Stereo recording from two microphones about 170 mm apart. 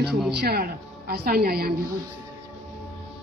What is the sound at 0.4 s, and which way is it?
A woman's voice, 65° right (ahead or behind).